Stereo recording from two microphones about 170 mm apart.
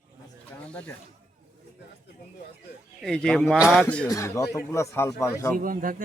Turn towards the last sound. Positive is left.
turn(degrees=-55)  # may be behind; listen again after turning